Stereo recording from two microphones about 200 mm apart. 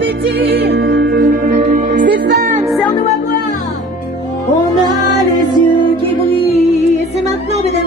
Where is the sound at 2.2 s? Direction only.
55° right (ahead or behind).